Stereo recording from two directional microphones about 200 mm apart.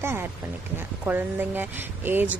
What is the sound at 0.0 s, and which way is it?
Speech, 10° right (ahead or behind).